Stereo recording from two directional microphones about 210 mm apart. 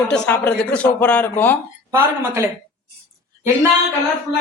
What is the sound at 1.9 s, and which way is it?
Speech, 10° right (ahead or behind).